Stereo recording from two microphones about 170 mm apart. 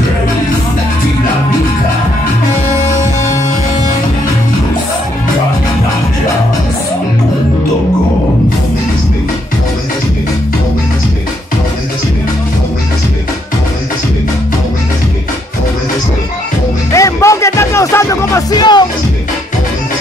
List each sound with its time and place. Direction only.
16.9 s music: 20° left (ahead or behind)